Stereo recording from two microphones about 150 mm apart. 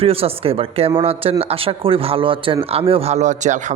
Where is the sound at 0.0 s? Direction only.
40° right (ahead or behind).